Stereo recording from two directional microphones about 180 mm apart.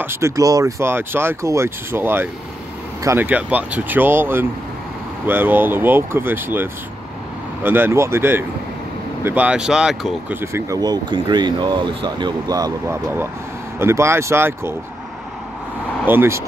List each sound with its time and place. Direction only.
0.0 s speech: 15° right (ahead or behind)
10.4 s speech: 15° right (ahead or behind)
16.1 s speech: 15° right (ahead or behind)